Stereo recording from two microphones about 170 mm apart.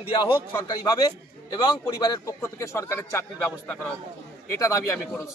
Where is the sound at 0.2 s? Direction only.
25° left (ahead or behind).